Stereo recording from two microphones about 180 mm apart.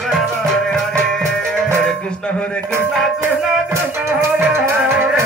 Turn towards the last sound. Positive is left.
turn(degrees=-15)  # may be behind; listen again after turning